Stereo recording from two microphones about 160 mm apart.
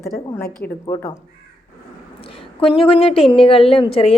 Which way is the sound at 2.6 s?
35° left (ahead or behind).